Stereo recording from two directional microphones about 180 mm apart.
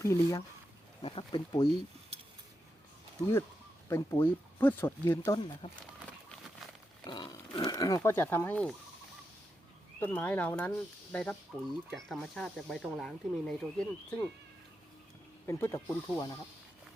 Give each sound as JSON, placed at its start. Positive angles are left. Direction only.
{"t": 0.0, "sound": "speech", "side_deg": 15}
{"t": 1.0, "sound": "speech", "side_deg": 25}
{"t": 3.8, "sound": "speech", "side_deg": 15}
{"t": 7.0, "sound": "speech", "side_deg": 25}
{"t": 10.0, "sound": "speech", "side_deg": 10}
{"t": 15.4, "sound": "speech", "side_deg": 15}